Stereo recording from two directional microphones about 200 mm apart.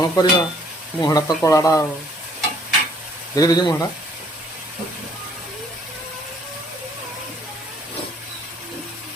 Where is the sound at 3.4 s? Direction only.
20° left (ahead or behind).